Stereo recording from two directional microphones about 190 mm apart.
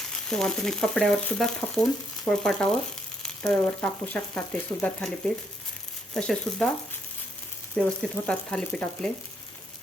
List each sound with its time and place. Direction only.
0.1 s speech: 5° left (ahead or behind)
6.1 s speech: 5° left (ahead or behind)
7.8 s speech: 5° left (ahead or behind)